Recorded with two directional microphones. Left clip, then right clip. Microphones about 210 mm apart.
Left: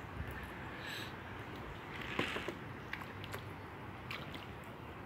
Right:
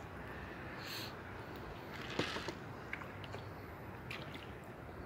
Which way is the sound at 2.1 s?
50° right (ahead or behind).